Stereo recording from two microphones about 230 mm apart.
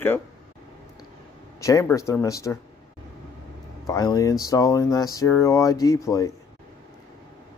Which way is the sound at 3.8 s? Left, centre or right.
Centre.